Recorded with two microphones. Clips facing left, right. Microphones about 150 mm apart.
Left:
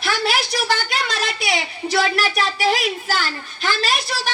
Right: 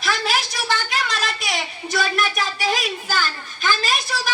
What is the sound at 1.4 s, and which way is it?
A woman's voice, 70° left (ahead or behind).